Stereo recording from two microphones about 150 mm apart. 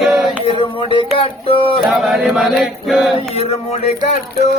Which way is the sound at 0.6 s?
35° left (ahead or behind).